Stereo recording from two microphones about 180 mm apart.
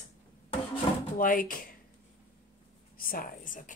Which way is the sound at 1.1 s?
50° left (ahead or behind).